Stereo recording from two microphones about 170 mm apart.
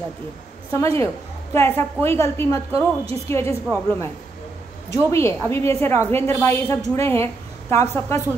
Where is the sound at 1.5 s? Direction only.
15° left (ahead or behind).